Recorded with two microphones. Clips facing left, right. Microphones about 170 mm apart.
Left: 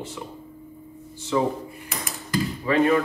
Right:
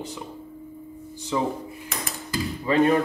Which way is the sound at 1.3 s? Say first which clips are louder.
Left 3 dB; 15° right (ahead or behind).